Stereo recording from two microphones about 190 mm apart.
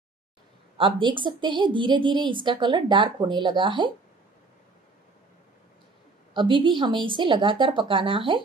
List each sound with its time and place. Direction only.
0.7 s a woman's voice: 25° right (ahead or behind)
6.3 s a woman's voice: 25° right (ahead or behind)